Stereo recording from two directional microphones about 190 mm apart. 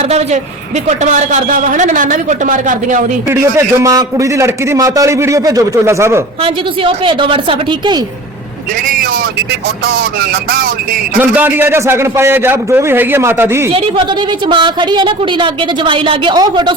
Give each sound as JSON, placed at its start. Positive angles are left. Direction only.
{"t": 0.1, "sound": "a man's voice", "side_deg": -35}
{"t": 3.2, "sound": "a man's voice", "side_deg": -15}
{"t": 6.4, "sound": "a woman's voice", "side_deg": -25}
{"t": 9.8, "sound": "a sound", "side_deg": -55}
{"t": 11.2, "sound": "a man's voice", "side_deg": -10}
{"t": 14.4, "sound": "a woman's voice", "side_deg": -25}